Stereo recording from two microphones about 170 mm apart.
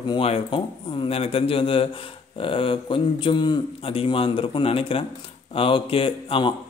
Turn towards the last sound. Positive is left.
turn(degrees=30)  # may be behind; listen again after turning